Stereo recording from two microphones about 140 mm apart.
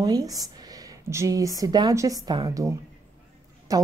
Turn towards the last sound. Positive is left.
turn(degrees=-25)  # may be behind; listen again after turning